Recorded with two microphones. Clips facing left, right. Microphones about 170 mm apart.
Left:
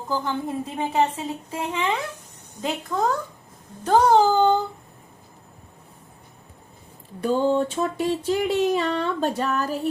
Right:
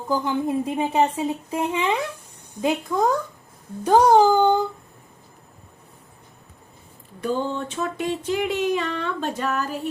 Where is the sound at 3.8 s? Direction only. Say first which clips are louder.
Right 2 dB; 15° right (ahead or behind).